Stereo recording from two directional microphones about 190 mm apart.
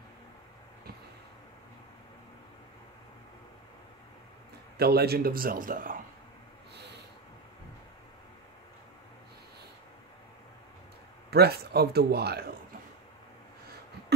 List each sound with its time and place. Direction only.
4.7 s a man's voice: 55° right (ahead or behind)
11.2 s speech: 55° right (ahead or behind)